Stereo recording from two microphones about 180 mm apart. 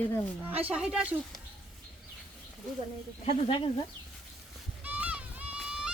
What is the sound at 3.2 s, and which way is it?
Speech, 30° left (ahead or behind).